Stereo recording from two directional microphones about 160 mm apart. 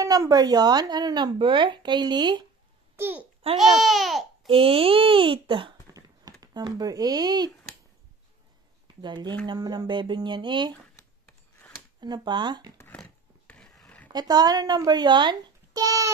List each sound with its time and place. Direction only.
0.0 s speech: 20° right (ahead or behind)
3.0 s a child's voice: 10° right (ahead or behind)
3.5 s speech: centre (ahead or behind)
4.5 s a child's voice: 35° right (ahead or behind)
9.0 s speech: 30° right (ahead or behind)
10.7 s a sound: 15° left (ahead or behind)
12.0 s speech: 25° right (ahead or behind)
12.7 s a sound: 10° left (ahead or behind)
14.1 s speech: 25° right (ahead or behind)